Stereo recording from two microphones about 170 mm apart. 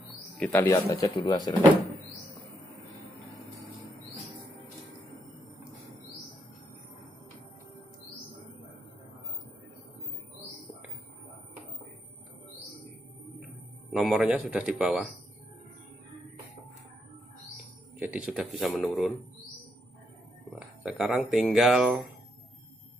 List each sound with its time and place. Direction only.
0.4 s speech: 10° left (ahead or behind)
13.9 s speech: centre (ahead or behind)
17.9 s speech: 10° right (ahead or behind)
20.5 s speech: centre (ahead or behind)